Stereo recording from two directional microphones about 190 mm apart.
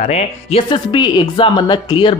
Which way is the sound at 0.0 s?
35° left (ahead or behind).